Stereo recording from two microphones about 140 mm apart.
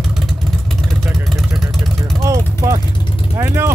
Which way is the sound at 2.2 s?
20° right (ahead or behind).